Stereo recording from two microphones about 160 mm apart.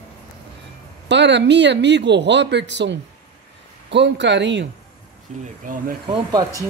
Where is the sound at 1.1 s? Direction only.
90° right.